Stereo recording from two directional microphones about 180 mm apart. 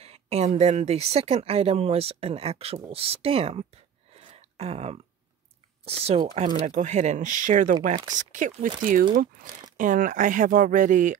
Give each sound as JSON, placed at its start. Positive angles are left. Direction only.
{"t": 0.0, "sound": "speech", "side_deg": -35}
{"t": 4.2, "sound": "a sound", "side_deg": -30}
{"t": 5.9, "sound": "speech", "side_deg": -35}